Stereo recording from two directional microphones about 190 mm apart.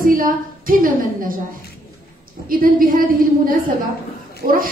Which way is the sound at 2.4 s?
50° right (ahead or behind).